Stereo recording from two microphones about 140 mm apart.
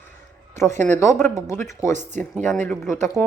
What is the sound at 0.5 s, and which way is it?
A woman's voice, 20° left (ahead or behind).